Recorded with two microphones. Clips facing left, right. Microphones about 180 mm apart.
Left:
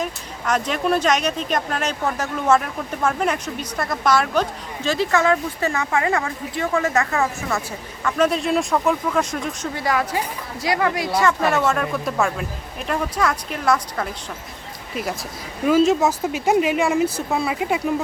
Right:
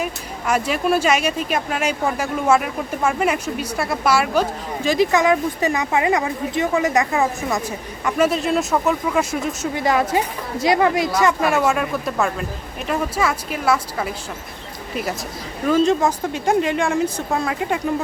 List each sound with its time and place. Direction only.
0.0 s speech: 10° right (ahead or behind)
8.3 s speech: centre (ahead or behind)
9.7 s a woman's voice: 20° right (ahead or behind); by 14.1 s 5° right (ahead or behind)
15.6 s speech: 5° left (ahead or behind)